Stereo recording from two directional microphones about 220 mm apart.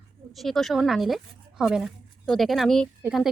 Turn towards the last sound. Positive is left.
turn(degrees=0)  # may be behind; listen again after turning